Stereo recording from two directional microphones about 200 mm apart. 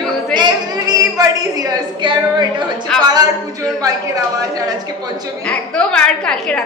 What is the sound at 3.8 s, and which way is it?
Speech, 15° right (ahead or behind).